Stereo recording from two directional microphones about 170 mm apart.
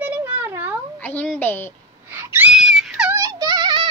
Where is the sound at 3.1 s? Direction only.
20° right (ahead or behind).